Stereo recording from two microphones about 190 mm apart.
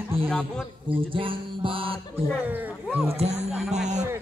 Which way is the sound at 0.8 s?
25° right (ahead or behind).